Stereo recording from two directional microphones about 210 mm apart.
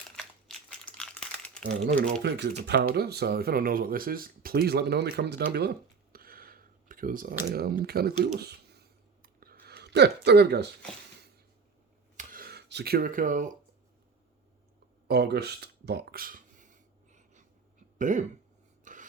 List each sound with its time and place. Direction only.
0.2 s crumpling: 5° left (ahead or behind)
2.2 s speech: 55° right (ahead or behind)
6.1 s a sound: 45° right (ahead or behind)
12.1 s a sound: 45° right (ahead or behind)
15.0 s speech: 50° right (ahead or behind)
17.1 s wheeze: 35° right (ahead or behind)
17.9 s cough: 35° right (ahead or behind)
18.9 s filing: 35° right (ahead or behind)